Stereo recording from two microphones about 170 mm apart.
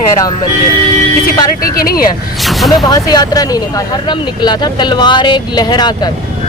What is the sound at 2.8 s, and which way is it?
Speech, 25° left (ahead or behind).